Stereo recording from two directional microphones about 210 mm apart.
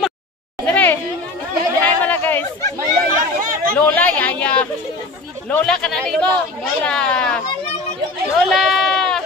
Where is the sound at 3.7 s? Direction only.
10° left (ahead or behind).